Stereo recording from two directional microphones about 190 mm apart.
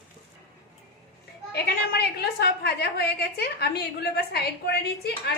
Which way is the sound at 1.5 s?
55° left (ahead or behind).